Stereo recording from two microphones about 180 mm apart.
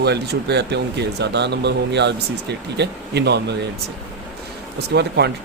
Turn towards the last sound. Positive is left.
turn(degrees=-65)  # may be behind; listen again after turning